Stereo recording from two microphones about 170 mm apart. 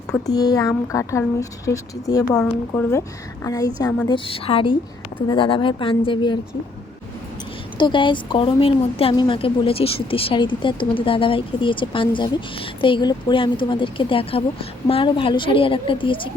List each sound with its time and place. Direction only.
0.3 s a woman's voice: 20° left (ahead or behind)
4.1 s a woman's voice: 35° left (ahead or behind)
7.8 s a woman's voice: 30° left (ahead or behind)